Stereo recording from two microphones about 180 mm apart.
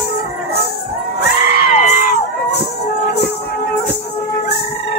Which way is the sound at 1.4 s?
65° left (ahead or behind).